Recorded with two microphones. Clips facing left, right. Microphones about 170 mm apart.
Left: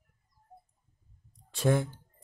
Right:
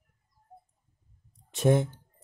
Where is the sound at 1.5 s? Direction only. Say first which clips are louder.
Right 3 dB; 20° right (ahead or behind).